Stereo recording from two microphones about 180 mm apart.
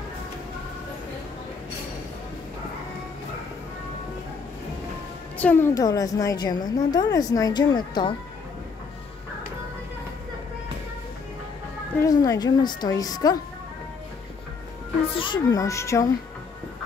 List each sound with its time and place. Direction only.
5.4 s a woman's voice: 10° left (ahead or behind)
12.0 s a woman's voice: 20° left (ahead or behind)
15.1 s a woman's voice: 25° left (ahead or behind)